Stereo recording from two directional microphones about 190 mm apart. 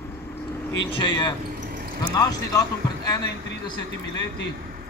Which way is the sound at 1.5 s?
50° right (ahead or behind).